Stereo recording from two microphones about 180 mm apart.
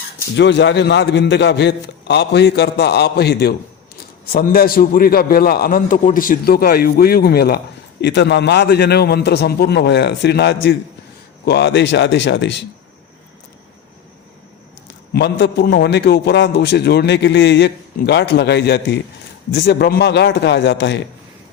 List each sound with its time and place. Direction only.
0.3 s a man's voice: 80° left; by 7.6 s 60° left (ahead or behind)
8.0 s a man's voice: 75° left (ahead or behind)
11.4 s speech: 70° left (ahead or behind)
15.1 s a man's voice: 70° left (ahead or behind)